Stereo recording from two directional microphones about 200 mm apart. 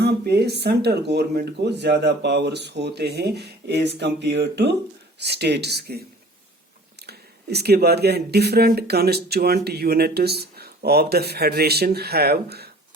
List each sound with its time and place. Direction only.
0.0 s speech: 55° right (ahead or behind)
7.1 s speech: 55° right (ahead or behind)